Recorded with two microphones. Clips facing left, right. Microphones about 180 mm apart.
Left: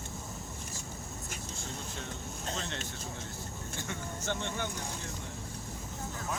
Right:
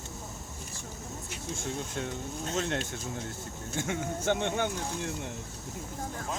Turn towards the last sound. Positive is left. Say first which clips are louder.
# right 7 dB
turn(degrees=-60)  # may be behind; listen again after turning